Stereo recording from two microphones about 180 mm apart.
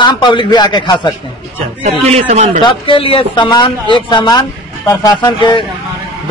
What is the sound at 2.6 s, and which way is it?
Speech, 30° left (ahead or behind).